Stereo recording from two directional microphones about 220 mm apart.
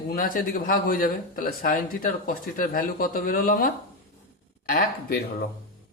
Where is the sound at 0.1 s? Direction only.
40° left (ahead or behind).